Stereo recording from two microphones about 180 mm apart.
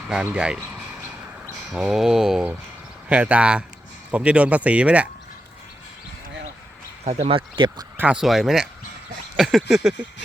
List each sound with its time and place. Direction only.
0.1 s speech: 5° right (ahead or behind)
7.0 s speech: 35° right (ahead or behind)
7.9 s speech: 5° right (ahead or behind)
9.3 s a sound: centre (ahead or behind)